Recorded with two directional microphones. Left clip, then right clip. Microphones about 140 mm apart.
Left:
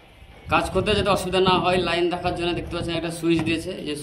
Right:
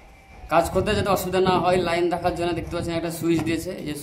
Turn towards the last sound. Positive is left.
turn(degrees=-45)  # may be behind; listen again after turning